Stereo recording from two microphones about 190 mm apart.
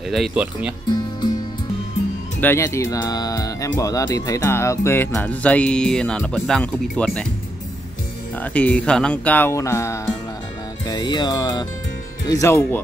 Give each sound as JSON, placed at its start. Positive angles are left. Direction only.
{"t": 0.1, "sound": "speech", "side_deg": -5}
{"t": 2.4, "sound": "speech", "side_deg": 15}
{"t": 8.4, "sound": "speech", "side_deg": 10}